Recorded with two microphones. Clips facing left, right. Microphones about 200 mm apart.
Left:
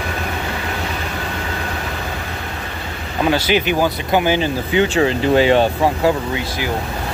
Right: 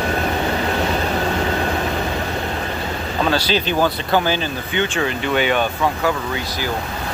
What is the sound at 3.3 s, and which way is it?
Speech, 15° left (ahead or behind).